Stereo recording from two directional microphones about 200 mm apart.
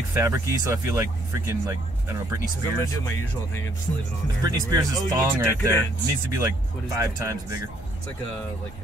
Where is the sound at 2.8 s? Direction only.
15° left (ahead or behind).